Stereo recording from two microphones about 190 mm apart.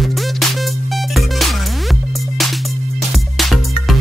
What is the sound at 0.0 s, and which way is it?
Music, centre (ahead or behind).